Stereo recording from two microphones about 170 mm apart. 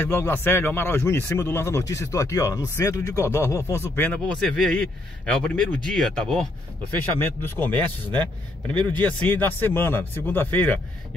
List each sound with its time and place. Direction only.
0.0 s a man's voice: 15° left (ahead or behind)
8.9 s speech: 10° left (ahead or behind)